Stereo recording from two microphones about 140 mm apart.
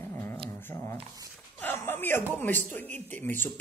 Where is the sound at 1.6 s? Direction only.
15° left (ahead or behind).